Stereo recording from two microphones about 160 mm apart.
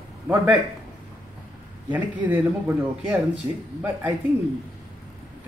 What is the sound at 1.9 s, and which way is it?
Speech, 10° right (ahead or behind).